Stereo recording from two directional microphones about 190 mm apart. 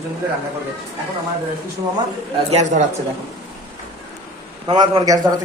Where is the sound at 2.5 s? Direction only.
35° right (ahead or behind).